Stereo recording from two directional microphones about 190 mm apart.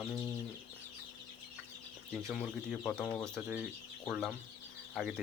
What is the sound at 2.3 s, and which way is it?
Speech, 5° right (ahead or behind).